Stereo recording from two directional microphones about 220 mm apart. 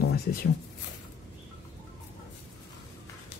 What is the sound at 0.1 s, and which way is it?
Writing, 45° left (ahead or behind).